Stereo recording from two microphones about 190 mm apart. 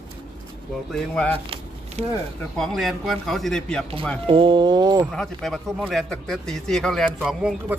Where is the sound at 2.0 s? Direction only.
35° right (ahead or behind).